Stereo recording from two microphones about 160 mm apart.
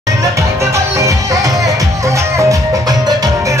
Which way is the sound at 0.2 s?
20° right (ahead or behind).